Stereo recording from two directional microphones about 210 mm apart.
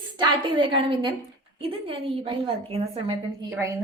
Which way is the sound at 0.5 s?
25° right (ahead or behind).